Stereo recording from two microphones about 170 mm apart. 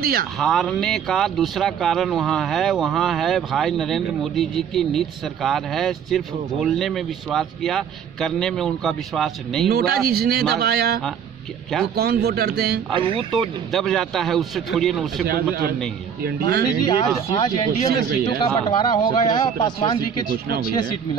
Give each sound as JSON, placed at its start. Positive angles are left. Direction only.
{"t": 0.0, "sound": "speech", "side_deg": -60}
{"t": 0.4, "sound": "a man's voice", "side_deg": 5}
{"t": 9.7, "sound": "speech", "side_deg": -65}
{"t": 12.9, "sound": "speech", "side_deg": -30}
{"t": 13.4, "sound": "a man's voice", "side_deg": 0}
{"t": 15.2, "sound": "speech", "side_deg": -65}
{"t": 16.8, "sound": "speech", "side_deg": 30}
{"t": 17.8, "sound": "speech", "side_deg": -70}
{"t": 18.4, "sound": "speech", "side_deg": 25}